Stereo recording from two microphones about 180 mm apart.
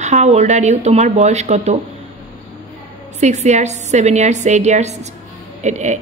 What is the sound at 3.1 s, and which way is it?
A woman's voice, 40° right (ahead or behind).